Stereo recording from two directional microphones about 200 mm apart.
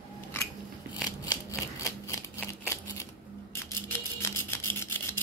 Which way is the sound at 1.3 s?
15° left (ahead or behind).